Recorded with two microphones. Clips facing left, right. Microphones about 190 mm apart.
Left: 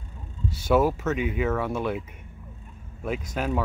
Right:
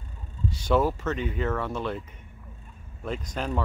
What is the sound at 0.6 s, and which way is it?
Speech, 10° left (ahead or behind).